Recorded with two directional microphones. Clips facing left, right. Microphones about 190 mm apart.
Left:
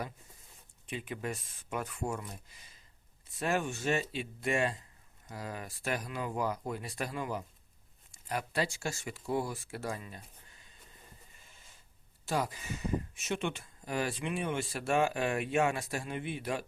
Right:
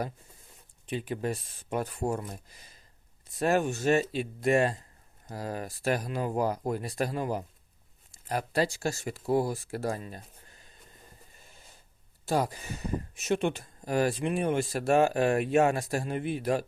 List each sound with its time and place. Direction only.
0.9 s speech: 35° right (ahead or behind)
11.3 s a sound: 40° right (ahead or behind)
12.2 s speech: 35° right (ahead or behind)